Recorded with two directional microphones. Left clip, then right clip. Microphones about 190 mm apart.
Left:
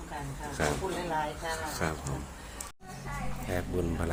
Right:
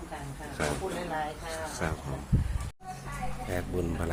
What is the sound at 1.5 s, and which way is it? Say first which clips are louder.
Speech: left 1 dB; centre (ahead or behind).